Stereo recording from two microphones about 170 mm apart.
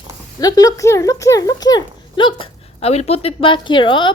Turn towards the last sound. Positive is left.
turn(degrees=30)  # may be behind; listen again after turning